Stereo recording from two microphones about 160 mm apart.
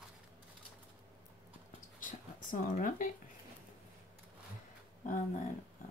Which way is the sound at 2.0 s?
55° left (ahead or behind).